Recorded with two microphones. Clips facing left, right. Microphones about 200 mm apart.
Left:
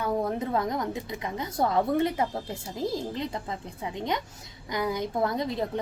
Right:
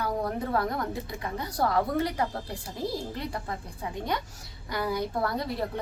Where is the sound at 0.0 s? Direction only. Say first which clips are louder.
Left 2 dB; 20° left (ahead or behind).